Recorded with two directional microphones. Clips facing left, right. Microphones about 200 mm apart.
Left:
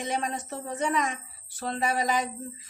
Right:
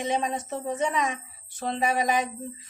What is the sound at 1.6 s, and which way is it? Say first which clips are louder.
Speech: right 2 dB; 15° right (ahead or behind).